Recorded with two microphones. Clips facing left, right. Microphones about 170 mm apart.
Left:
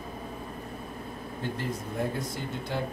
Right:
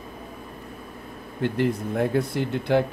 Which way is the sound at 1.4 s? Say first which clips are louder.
Right 10 dB; 70° right (ahead or behind).